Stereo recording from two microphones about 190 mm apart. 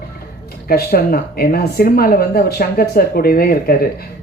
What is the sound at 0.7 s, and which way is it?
Speech, 50° left (ahead or behind).